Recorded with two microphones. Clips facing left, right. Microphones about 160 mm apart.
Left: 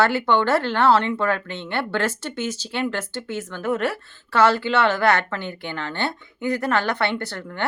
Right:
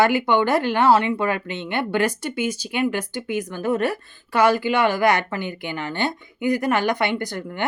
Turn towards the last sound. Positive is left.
turn(degrees=-15)  # may be behind; listen again after turning